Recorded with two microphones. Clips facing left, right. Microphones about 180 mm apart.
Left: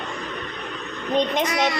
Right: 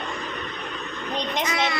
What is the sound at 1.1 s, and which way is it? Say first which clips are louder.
Speech: left 5 dB; 50° left (ahead or behind).